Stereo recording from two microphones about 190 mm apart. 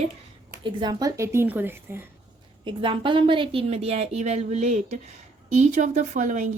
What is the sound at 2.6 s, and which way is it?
A woman's voice, 25° right (ahead or behind).